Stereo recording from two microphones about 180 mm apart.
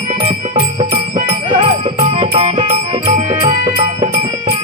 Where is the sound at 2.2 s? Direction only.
25° right (ahead or behind).